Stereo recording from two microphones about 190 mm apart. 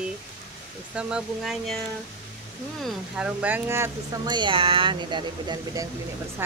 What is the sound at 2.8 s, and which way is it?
Speech, 5° right (ahead or behind).